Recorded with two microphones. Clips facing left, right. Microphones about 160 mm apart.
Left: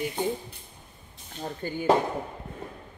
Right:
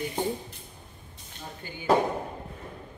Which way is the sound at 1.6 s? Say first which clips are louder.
Left 12 dB; 45° left (ahead or behind).